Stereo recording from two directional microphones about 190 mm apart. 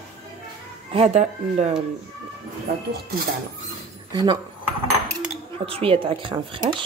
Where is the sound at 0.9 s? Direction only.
35° right (ahead or behind).